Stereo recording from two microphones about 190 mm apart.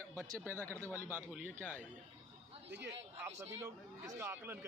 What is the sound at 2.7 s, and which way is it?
Speech, 65° right (ahead or behind).